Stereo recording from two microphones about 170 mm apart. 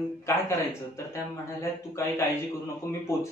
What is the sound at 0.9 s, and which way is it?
Speech, 15° left (ahead or behind).